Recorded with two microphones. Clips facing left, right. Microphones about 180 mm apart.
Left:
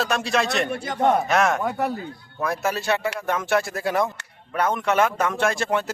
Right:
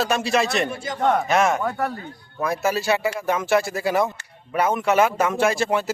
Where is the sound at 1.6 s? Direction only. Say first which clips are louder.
Left 1 dB; 20° left (ahead or behind).